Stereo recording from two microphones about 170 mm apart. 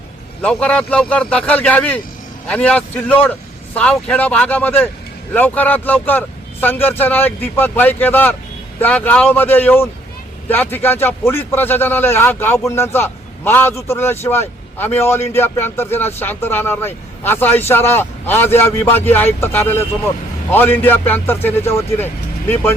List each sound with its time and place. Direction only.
0.4 s speech: 5° left (ahead or behind)